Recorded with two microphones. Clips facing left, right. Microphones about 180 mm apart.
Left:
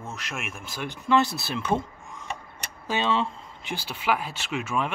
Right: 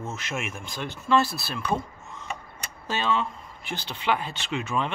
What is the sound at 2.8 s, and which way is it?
Speech, 15° left (ahead or behind).